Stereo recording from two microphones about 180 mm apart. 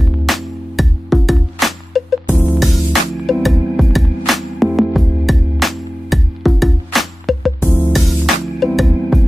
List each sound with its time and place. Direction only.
0.0 s music: centre (ahead or behind)